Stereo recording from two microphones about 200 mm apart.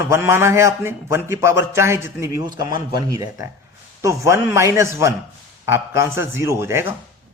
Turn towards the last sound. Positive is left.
turn(degrees=-10)  # may be behind; listen again after turning